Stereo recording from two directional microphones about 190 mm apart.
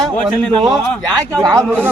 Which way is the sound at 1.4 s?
15° right (ahead or behind).